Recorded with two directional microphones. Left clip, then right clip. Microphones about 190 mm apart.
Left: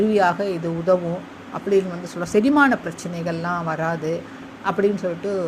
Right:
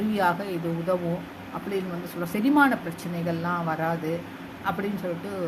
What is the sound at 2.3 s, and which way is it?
A woman's voice, 35° left (ahead or behind).